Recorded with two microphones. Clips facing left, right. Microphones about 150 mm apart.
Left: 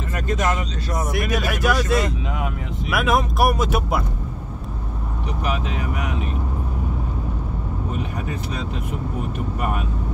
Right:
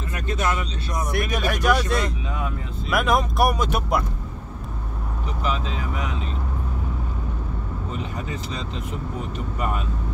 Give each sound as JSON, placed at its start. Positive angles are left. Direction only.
{"t": 1.1, "sound": "speech", "side_deg": 5}
{"t": 5.4, "sound": "speech", "side_deg": 65}
{"t": 7.9, "sound": "speech", "side_deg": 60}